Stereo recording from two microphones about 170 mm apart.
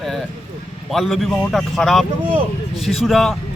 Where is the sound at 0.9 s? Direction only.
Centre (ahead or behind).